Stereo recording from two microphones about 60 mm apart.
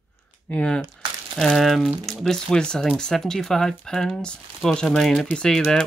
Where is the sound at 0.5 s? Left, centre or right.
Centre.